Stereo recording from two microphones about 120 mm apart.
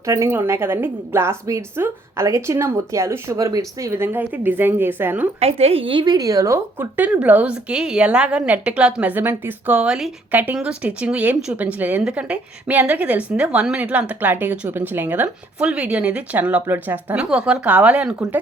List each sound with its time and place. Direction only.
0.0 s a woman's voice: 25° right (ahead or behind)
5.4 s a woman's voice: 60° right (ahead or behind); by 18.3 s 10° right (ahead or behind)